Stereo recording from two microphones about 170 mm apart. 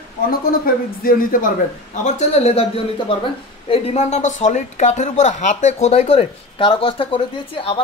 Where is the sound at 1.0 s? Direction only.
55° left (ahead or behind).